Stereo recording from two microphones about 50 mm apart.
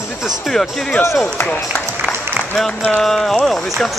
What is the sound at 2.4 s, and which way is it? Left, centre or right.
Applause, centre.